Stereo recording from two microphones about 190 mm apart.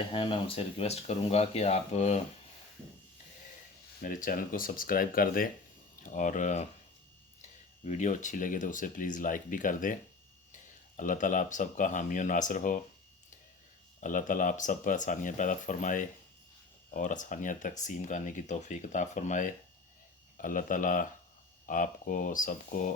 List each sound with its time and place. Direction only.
0.1 s speech: 30° left (ahead or behind)
4.0 s speech: 45° left (ahead or behind)
7.9 s speech: 40° left (ahead or behind)
14.0 s speech: 45° left (ahead or behind)